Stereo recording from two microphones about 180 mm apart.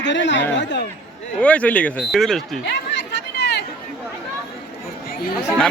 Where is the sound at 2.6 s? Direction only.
70° left (ahead or behind).